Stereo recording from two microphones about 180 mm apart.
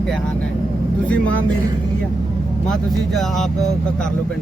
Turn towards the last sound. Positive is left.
turn(degrees=0)  # may be behind; listen again after turning